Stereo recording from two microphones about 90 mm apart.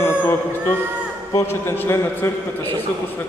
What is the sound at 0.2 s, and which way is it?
A man's voice, 25° left (ahead or behind).